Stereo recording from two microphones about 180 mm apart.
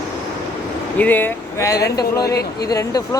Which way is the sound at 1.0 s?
10° left (ahead or behind).